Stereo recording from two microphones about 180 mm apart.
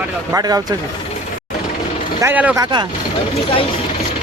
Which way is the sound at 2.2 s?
10° right (ahead or behind).